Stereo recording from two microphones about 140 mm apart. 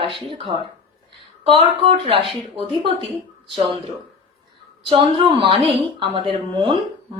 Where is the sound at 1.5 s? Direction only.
40° right (ahead or behind).